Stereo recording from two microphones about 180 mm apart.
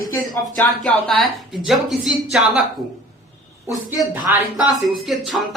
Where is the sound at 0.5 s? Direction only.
5° left (ahead or behind).